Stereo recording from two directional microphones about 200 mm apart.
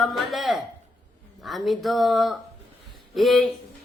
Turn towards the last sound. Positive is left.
turn(degrees=0)  # may be behind; listen again after turning